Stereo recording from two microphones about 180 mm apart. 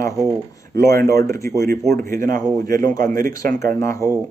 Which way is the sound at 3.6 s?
15° left (ahead or behind).